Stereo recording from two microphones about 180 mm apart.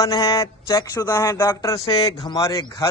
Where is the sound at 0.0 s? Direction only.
20° left (ahead or behind).